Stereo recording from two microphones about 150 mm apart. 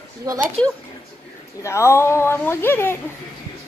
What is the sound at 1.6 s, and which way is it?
Speech, 20° left (ahead or behind).